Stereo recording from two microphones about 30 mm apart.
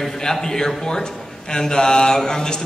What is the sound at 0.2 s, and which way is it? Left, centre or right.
A man's voice, centre.